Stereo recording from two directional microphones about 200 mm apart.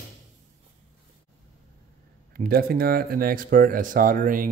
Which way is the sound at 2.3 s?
50° right (ahead or behind).